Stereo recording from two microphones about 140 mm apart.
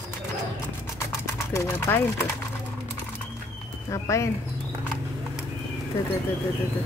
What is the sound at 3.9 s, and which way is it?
Speech, 20° left (ahead or behind).